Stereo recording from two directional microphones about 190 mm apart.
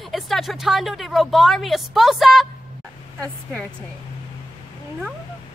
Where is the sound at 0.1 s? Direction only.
Centre (ahead or behind).